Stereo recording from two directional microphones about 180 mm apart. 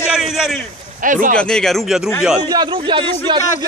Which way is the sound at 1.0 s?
45° right (ahead or behind).